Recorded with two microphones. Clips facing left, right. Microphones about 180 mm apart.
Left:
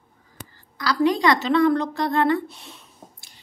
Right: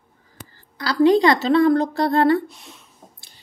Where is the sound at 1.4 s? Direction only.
35° right (ahead or behind).